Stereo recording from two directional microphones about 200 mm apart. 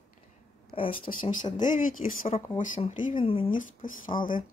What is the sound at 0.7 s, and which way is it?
Speech, 30° left (ahead or behind).